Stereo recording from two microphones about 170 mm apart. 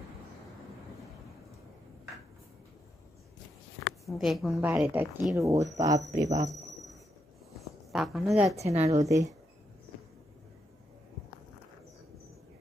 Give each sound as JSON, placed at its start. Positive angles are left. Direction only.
{"t": 3.8, "sound": "speech", "side_deg": 0}
{"t": 7.5, "sound": "a woman's voice", "side_deg": 0}
{"t": 8.5, "sound": "a woman's voice", "side_deg": -40}
{"t": 9.0, "sound": "speech", "side_deg": -20}